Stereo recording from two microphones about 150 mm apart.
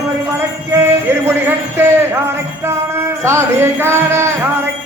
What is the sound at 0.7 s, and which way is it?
Speech, 15° right (ahead or behind).